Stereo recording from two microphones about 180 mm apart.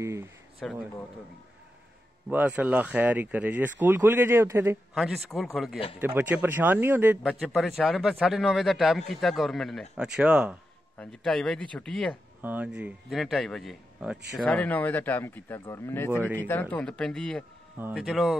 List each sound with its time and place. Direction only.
0.0 s speech: 15° right (ahead or behind)
0.6 s speech: centre (ahead or behind)
2.2 s speech: 10° right (ahead or behind)
4.9 s a man's voice: centre (ahead or behind)
5.9 s a man's voice: 10° right (ahead or behind); by 12.2 s 5° left (ahead or behind)
12.4 s speech: 10° right (ahead or behind)
17.7 s speech: 10° right (ahead or behind)
18.0 s a man's voice: centre (ahead or behind)